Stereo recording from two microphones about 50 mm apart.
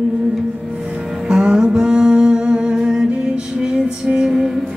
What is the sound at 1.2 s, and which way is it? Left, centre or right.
Music, centre.